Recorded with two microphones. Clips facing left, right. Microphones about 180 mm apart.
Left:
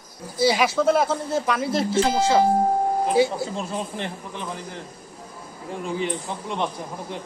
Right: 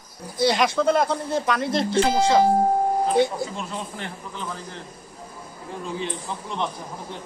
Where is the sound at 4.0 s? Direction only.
15° left (ahead or behind).